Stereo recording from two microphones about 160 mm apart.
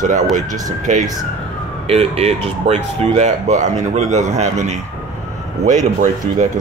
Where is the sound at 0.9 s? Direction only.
45° right (ahead or behind).